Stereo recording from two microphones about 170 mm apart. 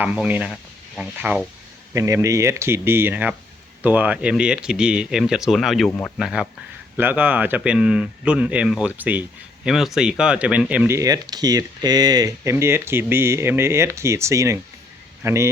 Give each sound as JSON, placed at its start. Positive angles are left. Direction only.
{"t": 0.0, "sound": "speech", "side_deg": -10}
{"t": 1.9, "sound": "speech", "side_deg": -15}